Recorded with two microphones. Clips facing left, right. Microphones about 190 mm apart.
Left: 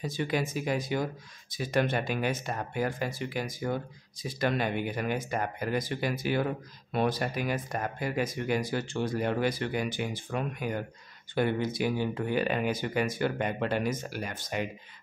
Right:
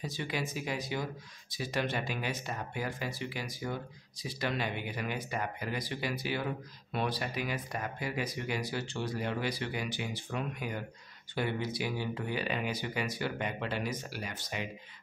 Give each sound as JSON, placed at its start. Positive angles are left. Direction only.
{"t": 0.0, "sound": "speech", "side_deg": 50}